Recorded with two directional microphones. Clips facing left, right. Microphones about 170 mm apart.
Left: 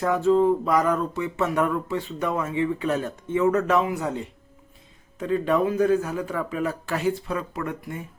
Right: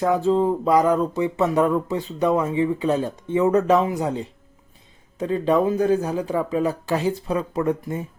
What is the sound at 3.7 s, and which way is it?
Speech, 35° right (ahead or behind).